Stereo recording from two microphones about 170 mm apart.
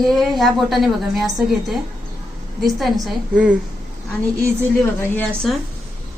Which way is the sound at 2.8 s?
5° right (ahead or behind).